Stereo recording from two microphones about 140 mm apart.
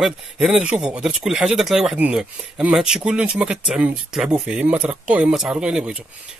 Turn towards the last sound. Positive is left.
turn(degrees=-5)  # may be behind; listen again after turning